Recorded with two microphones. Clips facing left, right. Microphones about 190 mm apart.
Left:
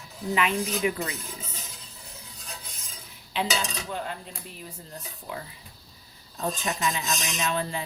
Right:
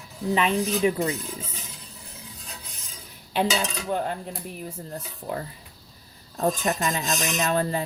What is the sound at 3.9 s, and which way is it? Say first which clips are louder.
A woman's voice: right 7 dB; 50° right (ahead or behind).